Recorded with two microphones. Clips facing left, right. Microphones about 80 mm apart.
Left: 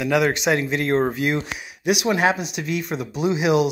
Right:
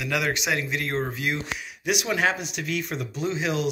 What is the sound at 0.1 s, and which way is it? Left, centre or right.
Speech, left.